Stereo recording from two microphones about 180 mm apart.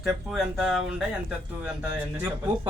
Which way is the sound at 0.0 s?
Centre (ahead or behind).